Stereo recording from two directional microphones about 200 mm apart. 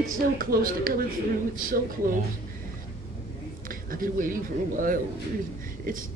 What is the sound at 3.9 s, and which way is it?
Speech, 45° right (ahead or behind).